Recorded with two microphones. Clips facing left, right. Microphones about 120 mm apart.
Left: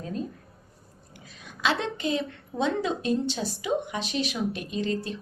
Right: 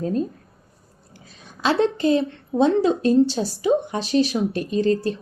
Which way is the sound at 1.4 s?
35° right (ahead or behind).